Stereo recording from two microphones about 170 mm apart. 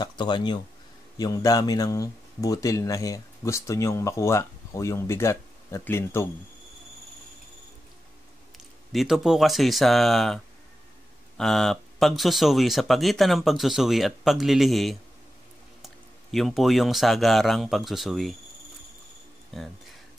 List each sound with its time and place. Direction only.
0.0 s speech: 25° left (ahead or behind)
8.9 s speech: centre (ahead or behind)
19.5 s speech: centre (ahead or behind)